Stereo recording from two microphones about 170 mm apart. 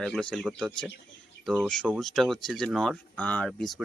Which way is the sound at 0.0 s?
5° left (ahead or behind).